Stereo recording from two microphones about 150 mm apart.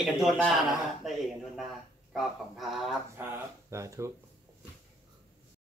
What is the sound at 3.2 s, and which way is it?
Speech, 20° right (ahead or behind).